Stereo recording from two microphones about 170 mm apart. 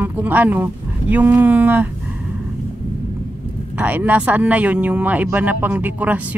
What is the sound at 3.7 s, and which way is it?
Speech, 10° right (ahead or behind).